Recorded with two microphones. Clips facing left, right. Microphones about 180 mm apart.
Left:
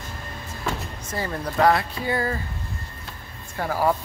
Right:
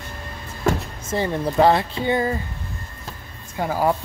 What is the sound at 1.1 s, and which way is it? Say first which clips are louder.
Speech: right 6 dB; 25° right (ahead or behind).